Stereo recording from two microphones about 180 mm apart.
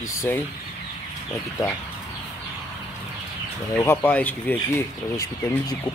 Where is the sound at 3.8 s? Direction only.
15° left (ahead or behind).